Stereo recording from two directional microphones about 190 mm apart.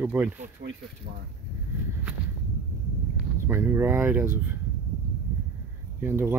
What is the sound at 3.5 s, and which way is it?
Speech, 10° right (ahead or behind).